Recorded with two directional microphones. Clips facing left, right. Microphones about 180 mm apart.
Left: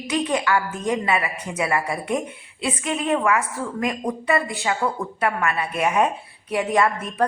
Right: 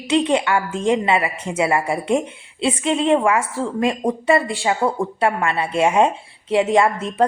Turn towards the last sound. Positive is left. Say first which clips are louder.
# right 4 dB
turn(degrees=-25)  # may be behind; listen again after turning